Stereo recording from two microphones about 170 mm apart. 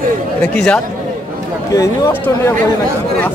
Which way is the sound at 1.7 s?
20° left (ahead or behind).